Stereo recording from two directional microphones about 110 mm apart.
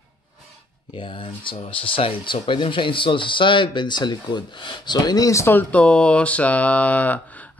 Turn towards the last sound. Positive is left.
turn(degrees=15)  # may be behind; listen again after turning